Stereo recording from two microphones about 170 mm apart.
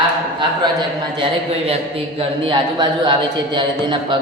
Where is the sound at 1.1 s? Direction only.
35° right (ahead or behind).